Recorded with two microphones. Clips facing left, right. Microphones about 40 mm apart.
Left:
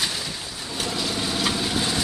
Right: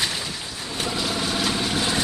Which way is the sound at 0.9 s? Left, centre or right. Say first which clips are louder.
Right 1 dB; centre.